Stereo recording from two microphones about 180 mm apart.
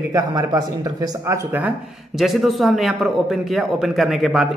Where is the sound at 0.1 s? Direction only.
20° right (ahead or behind).